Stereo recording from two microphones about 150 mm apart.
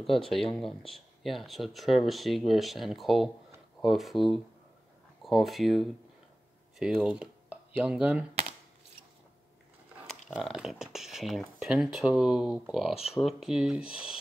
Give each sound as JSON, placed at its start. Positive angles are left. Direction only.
{"t": 0.0, "sound": "speech", "side_deg": 0}
{"t": 10.0, "sound": "speech", "side_deg": 0}
{"t": 12.9, "sound": "speech", "side_deg": 40}
{"t": 13.2, "sound": "speech", "side_deg": 0}